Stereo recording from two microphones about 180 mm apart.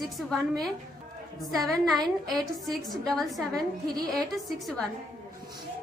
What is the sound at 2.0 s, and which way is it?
Speech, 20° right (ahead or behind).